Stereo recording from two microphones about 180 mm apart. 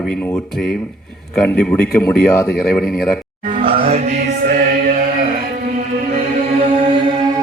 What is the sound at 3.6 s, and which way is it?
Music, 30° right (ahead or behind).